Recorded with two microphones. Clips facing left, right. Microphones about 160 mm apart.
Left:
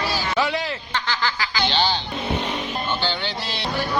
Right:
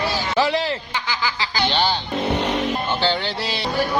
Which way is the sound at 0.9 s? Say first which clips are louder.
Even; 10° right (ahead or behind).